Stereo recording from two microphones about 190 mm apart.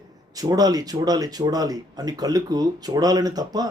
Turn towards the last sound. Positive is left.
turn(degrees=-20)  # may be behind; listen again after turning